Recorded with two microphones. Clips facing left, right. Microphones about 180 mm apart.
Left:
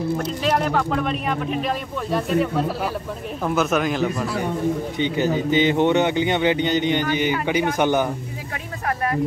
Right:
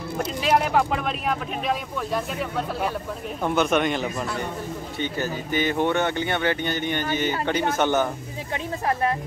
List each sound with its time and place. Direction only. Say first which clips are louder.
0.2 s speech: left 1 dB; 5° right (ahead or behind)
4.9 s speech: left 7 dB; 20° left (ahead or behind)